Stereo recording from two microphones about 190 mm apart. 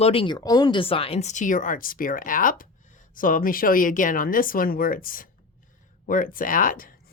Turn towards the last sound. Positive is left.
turn(degrees=45)  # may be behind; listen again after turning